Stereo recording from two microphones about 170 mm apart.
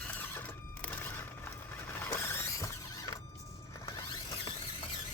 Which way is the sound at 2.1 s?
15° left (ahead or behind).